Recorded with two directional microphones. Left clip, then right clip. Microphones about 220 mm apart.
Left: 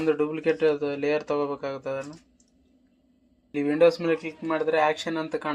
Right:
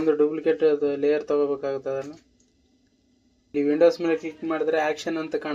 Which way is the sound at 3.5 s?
20° left (ahead or behind).